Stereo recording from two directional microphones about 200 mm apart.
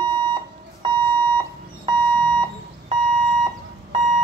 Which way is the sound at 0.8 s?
25° right (ahead or behind).